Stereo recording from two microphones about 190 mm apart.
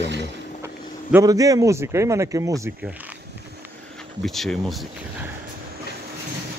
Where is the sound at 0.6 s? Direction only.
15° right (ahead or behind).